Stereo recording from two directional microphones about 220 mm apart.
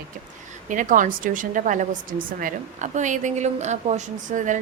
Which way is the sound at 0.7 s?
35° right (ahead or behind).